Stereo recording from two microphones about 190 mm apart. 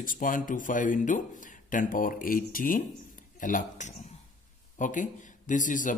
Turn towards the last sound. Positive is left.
turn(degrees=45)  # may be behind; listen again after turning